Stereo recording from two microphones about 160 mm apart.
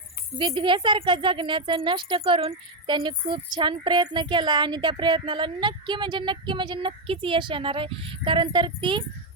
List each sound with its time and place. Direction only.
0.3 s speech: 30° right (ahead or behind)